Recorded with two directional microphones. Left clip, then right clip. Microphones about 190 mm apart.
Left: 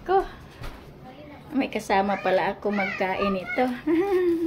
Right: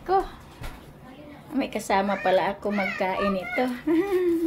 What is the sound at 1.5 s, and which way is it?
A child's voice, 10° left (ahead or behind).